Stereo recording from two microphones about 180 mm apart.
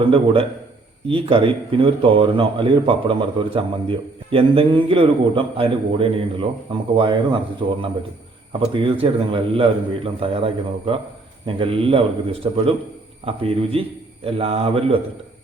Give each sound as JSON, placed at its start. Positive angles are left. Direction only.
{"t": 0.0, "sound": "a man's voice", "side_deg": -30}